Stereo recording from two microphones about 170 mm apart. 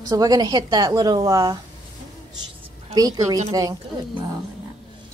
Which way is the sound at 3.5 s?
20° right (ahead or behind).